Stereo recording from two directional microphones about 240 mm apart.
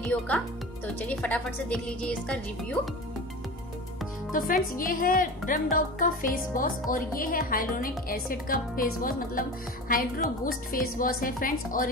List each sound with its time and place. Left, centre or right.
0.0 s speech: centre
4.3 s speech: left